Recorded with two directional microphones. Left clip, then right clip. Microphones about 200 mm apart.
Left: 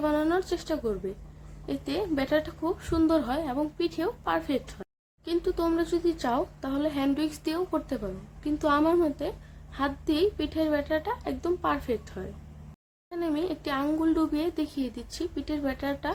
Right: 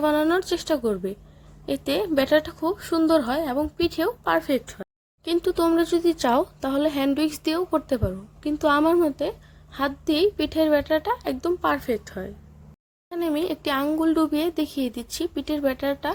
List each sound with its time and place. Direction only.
0.0 s a woman's voice: 35° right (ahead or behind)